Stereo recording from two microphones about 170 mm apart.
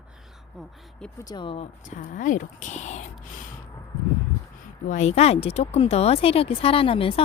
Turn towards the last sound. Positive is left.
turn(degrees=30)  # may be behind; listen again after turning